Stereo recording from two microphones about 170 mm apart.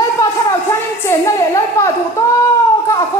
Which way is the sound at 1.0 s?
15° left (ahead or behind).